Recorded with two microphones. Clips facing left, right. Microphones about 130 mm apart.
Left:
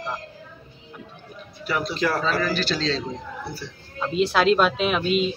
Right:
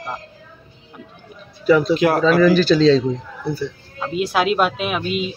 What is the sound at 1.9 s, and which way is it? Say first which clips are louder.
Speech: right 8 dB; 60° right (ahead or behind).